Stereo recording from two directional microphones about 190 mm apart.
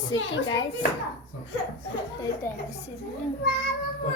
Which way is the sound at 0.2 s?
85° left.